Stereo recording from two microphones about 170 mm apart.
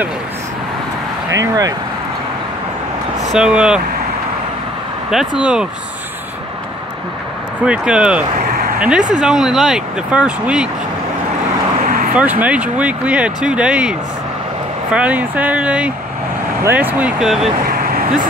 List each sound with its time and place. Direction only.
1.3 s speech: 20° right (ahead or behind)
3.3 s speech: 5° right (ahead or behind)
5.1 s speech: 5° right (ahead or behind)
7.6 s speech: 5° right (ahead or behind)
11.8 s vehicle: 55° right (ahead or behind)
12.2 s speech: 10° right (ahead or behind)
17.6 s vehicle: 60° right (ahead or behind)